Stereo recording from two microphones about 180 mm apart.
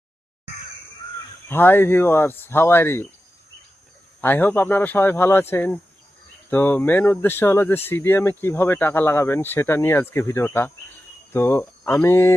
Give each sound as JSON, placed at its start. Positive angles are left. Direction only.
{"t": 1.5, "sound": "speech", "side_deg": 10}
{"t": 4.2, "sound": "speech", "side_deg": 10}